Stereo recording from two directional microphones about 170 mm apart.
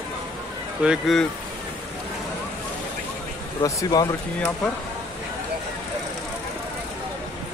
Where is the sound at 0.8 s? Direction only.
Centre (ahead or behind).